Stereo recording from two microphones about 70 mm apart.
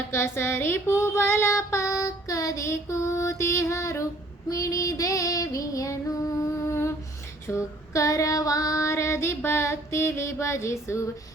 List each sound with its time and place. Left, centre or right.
0.1 s child singing: left
7.4 s female singing: left